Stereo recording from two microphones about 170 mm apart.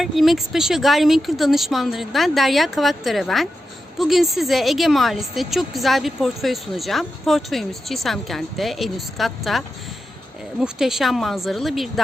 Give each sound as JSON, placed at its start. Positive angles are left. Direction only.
{"t": 0.0, "sound": "a woman's voice", "side_deg": 0}